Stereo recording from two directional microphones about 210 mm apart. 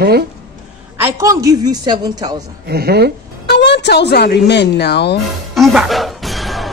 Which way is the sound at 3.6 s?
55° left (ahead or behind).